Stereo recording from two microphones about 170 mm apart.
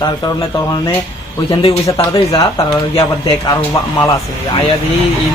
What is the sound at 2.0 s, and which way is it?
Speech, 30° left (ahead or behind).